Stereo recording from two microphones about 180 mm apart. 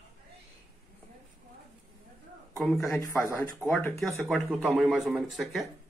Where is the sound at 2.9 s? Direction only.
20° left (ahead or behind).